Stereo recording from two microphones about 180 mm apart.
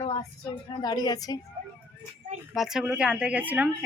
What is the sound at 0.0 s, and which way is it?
A woman's voice, 25° left (ahead or behind).